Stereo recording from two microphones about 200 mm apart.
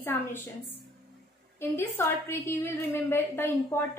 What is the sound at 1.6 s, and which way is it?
A woman's voice, 10° left (ahead or behind).